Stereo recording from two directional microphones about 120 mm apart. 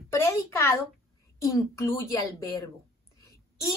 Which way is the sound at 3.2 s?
25° left (ahead or behind).